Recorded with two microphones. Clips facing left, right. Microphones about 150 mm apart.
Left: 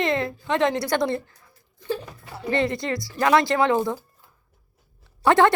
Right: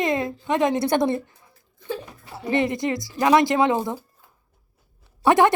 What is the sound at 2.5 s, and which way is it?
A woman's voice, 15° right (ahead or behind).